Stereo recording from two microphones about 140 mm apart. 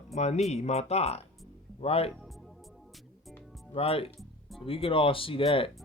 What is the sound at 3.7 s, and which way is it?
Speech, 45° left (ahead or behind).